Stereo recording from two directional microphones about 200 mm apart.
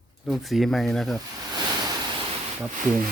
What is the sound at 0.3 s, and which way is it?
Speech, centre (ahead or behind).